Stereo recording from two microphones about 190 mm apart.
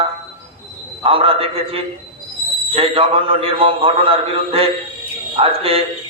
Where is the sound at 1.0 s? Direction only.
30° right (ahead or behind).